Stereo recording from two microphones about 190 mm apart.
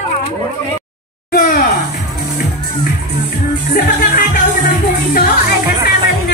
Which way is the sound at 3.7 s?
50° left (ahead or behind).